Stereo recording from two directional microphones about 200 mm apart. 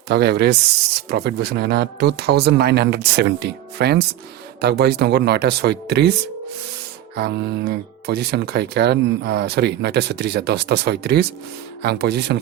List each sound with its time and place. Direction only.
0.1 s speech: 55° right (ahead or behind)